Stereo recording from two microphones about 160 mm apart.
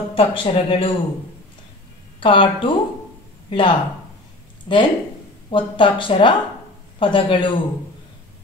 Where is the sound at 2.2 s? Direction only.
30° left (ahead or behind).